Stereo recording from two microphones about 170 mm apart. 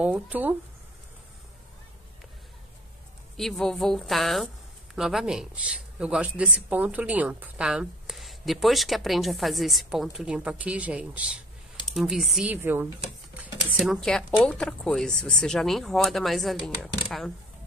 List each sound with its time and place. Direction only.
0.0 s speech: 10° right (ahead or behind)
3.3 s speech: centre (ahead or behind)
13.7 s speech: centre (ahead or behind)